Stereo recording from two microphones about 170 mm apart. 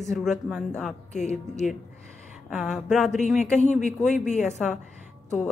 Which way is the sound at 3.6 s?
45° left (ahead or behind).